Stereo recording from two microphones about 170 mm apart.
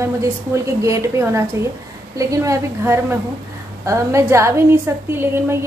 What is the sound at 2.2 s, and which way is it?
A woman's voice, 20° right (ahead or behind).